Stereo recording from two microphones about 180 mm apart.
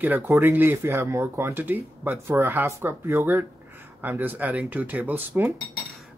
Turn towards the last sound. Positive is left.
turn(degrees=-10)  # may be behind; listen again after turning